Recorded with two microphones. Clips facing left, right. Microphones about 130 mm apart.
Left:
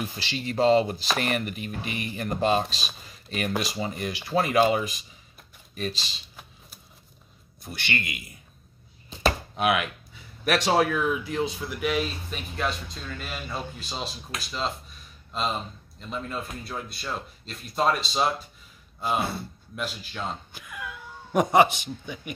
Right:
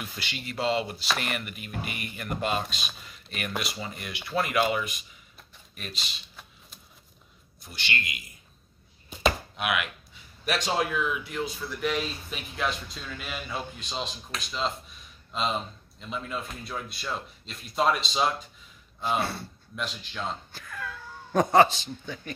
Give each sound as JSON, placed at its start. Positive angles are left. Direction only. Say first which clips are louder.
{"t": 0.0, "sound": "speech", "louder": "left 6 dB", "side_deg": 35}
{"t": 7.6, "sound": "a man's voice", "louder": "left 2 dB", "side_deg": 55}
{"t": 9.2, "sound": "chopping", "louder": "left 3 dB", "side_deg": 35}
{"t": 10.4, "sound": "speech", "louder": "left 5 dB", "side_deg": 65}
{"t": 10.8, "sound": "speech", "louder": "left 4 dB", "side_deg": 50}
{"t": 11.6, "sound": "speech", "louder": "left 2 dB", "side_deg": 10}
{"t": 20.5, "sound": "a sound", "louder": "even", "side_deg": 15}
{"t": 21.7, "sound": "speech", "louder": "left 1 dB", "side_deg": 15}